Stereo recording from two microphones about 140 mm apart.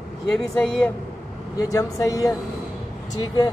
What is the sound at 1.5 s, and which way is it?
Speech, 25° left (ahead or behind).